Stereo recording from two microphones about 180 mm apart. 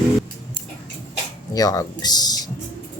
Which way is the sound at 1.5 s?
20° left (ahead or behind).